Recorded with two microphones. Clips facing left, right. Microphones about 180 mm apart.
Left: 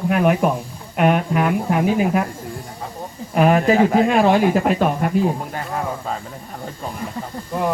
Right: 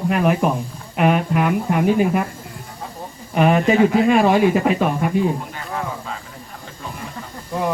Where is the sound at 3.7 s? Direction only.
45° left (ahead or behind).